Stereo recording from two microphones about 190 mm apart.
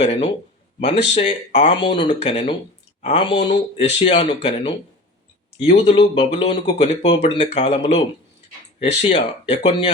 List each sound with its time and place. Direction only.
0.0 s speech: 35° left (ahead or behind)